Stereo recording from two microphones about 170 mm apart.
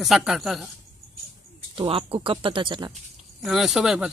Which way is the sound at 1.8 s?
30° right (ahead or behind).